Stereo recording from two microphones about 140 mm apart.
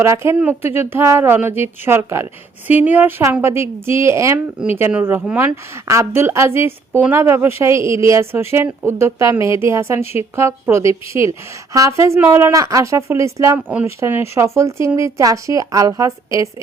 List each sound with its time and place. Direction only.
0.0 s a woman's voice: 20° right (ahead or behind)
5.9 s a woman's voice: 20° right (ahead or behind)